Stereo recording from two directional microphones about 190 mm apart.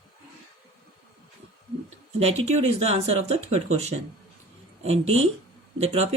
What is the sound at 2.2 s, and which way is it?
Speech, 35° right (ahead or behind).